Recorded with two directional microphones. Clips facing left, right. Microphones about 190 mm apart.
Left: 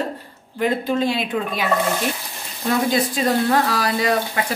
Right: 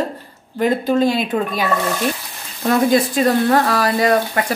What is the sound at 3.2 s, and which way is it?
Speech, 55° right (ahead or behind).